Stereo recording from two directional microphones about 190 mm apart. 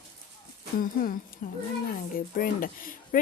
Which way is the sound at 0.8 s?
45° left (ahead or behind).